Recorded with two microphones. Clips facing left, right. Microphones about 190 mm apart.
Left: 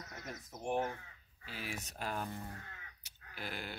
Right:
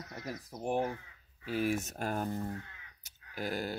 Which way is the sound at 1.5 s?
45° right (ahead or behind).